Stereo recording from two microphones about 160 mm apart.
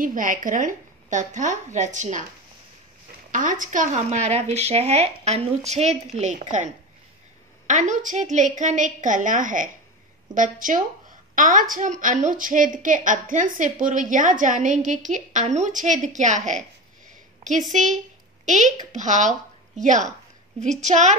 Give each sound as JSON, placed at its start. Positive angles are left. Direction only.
{"t": 0.0, "sound": "a woman's voice", "side_deg": -55}
{"t": 3.3, "sound": "a woman's voice", "side_deg": -55}